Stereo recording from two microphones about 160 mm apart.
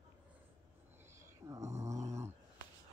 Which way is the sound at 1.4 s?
20° right (ahead or behind).